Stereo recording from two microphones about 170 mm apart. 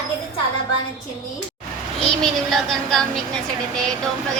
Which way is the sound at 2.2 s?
Centre (ahead or behind).